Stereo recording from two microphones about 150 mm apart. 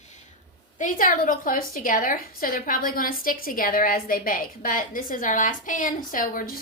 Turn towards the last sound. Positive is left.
turn(degrees=70)  # may be behind; listen again after turning